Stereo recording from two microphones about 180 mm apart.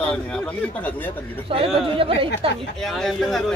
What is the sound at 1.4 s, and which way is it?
Speech, 30° right (ahead or behind).